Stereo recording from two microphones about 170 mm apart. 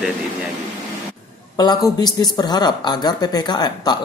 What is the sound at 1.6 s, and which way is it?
Speech, 25° left (ahead or behind).